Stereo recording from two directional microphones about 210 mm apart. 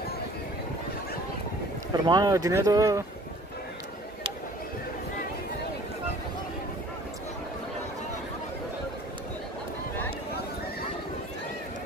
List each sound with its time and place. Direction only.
2.0 s speech: 20° right (ahead or behind)